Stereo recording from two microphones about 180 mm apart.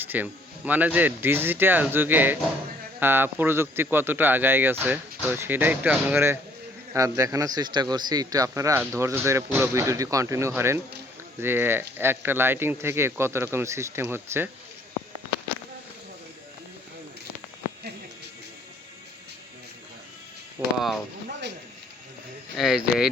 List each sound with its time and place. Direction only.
0.0 s speech: 10° right (ahead or behind)
20.6 s speech: 15° right (ahead or behind)
22.5 s speech: centre (ahead or behind)